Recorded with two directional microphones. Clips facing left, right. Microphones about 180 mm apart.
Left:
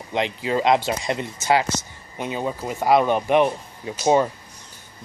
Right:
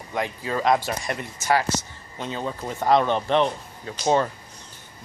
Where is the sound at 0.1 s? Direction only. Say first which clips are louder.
Left 4 dB; 20° left (ahead or behind).